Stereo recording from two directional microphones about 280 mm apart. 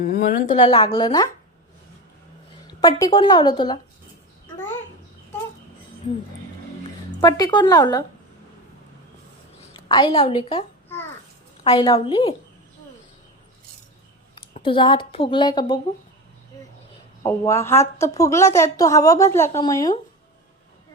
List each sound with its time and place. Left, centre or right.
0.0 s a woman's voice: left; by 1.3 s centre
2.6 s a woman's voice: centre
7.2 s a woman's voice: centre
9.6 s a woman's voice: centre
14.3 s a woman's voice: centre
17.2 s a woman's voice: centre